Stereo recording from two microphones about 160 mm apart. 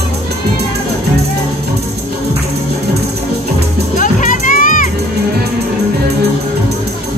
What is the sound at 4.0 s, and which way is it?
Music, 55° left (ahead or behind).